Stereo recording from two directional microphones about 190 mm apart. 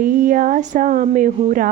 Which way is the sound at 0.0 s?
45° right (ahead or behind).